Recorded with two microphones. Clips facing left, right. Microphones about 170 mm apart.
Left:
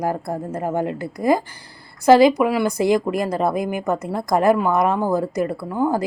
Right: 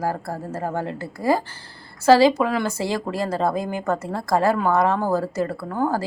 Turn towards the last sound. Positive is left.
turn(degrees=15)  # may be behind; listen again after turning